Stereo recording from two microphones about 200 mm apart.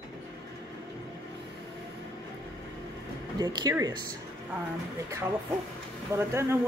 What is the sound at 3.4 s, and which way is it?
Speech, 20° right (ahead or behind).